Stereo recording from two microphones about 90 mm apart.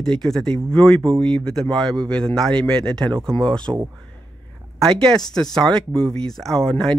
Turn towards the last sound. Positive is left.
turn(degrees=10)  # may be behind; listen again after turning